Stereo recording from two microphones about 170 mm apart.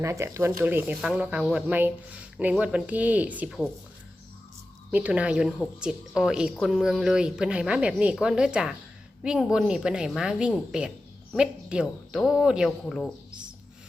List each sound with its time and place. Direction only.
0.0 s speech: 15° right (ahead or behind)
4.9 s a woman's voice: 10° right (ahead or behind)